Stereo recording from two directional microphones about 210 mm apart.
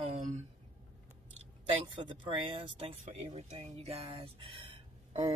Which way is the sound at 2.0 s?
25° right (ahead or behind).